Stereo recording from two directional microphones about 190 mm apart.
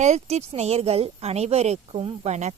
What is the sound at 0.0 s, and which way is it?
Speech, 35° right (ahead or behind).